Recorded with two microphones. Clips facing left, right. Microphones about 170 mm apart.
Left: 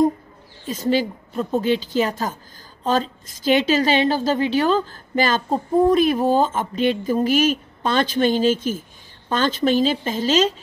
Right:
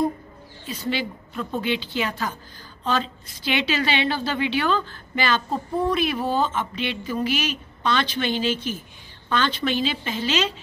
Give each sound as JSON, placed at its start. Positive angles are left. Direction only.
{"t": 0.7, "sound": "a woman's voice", "side_deg": 45}